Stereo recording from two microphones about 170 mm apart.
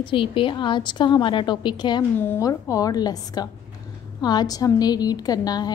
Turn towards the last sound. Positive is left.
turn(degrees=25)  # may be behind; listen again after turning